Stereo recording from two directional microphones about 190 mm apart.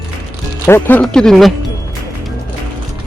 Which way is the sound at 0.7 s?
10° left (ahead or behind).